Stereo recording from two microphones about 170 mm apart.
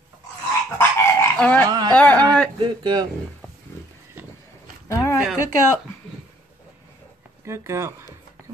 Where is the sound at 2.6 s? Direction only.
25° right (ahead or behind).